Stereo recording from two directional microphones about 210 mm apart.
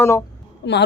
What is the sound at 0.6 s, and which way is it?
Speech, 55° left (ahead or behind).